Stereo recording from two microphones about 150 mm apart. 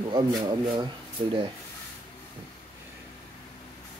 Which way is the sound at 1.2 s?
50° right (ahead or behind).